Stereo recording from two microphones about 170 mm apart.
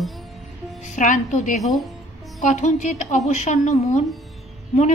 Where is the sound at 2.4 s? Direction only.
45° left (ahead or behind).